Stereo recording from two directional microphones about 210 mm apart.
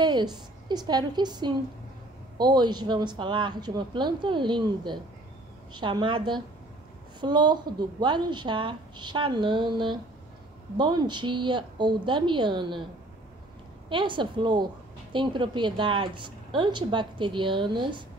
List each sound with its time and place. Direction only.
0.0 s speech: 20° right (ahead or behind)
13.8 s speech: 25° right (ahead or behind)